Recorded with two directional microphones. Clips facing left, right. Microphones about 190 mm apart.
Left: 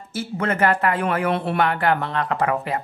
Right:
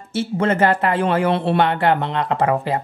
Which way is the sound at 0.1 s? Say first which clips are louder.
Right 5 dB; 30° right (ahead or behind).